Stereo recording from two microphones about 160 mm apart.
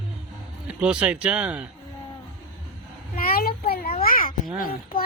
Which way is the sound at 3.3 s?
70° left (ahead or behind).